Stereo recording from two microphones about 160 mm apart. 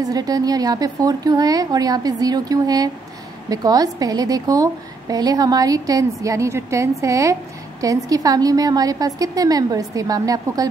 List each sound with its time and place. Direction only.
0.0 s a woman's voice: 25° right (ahead or behind)